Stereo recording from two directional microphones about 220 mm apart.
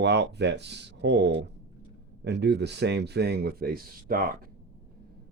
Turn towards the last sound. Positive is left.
turn(degrees=-40)  # may be behind; listen again after turning